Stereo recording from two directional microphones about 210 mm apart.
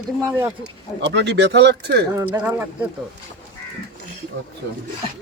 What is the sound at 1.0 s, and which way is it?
Speech, 55° right (ahead or behind).